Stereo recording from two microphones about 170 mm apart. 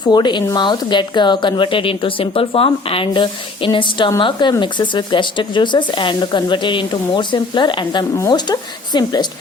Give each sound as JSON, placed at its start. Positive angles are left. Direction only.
{"t": 0.1, "sound": "speech", "side_deg": 25}